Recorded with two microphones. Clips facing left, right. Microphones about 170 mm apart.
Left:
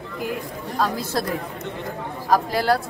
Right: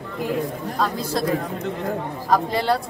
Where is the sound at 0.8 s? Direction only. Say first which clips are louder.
Even; centre (ahead or behind).